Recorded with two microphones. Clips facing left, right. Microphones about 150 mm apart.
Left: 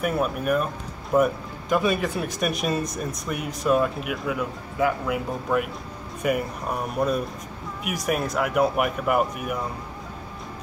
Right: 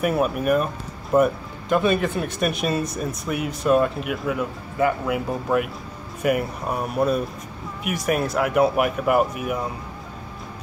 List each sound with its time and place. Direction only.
0.0 s speech: 5° right (ahead or behind)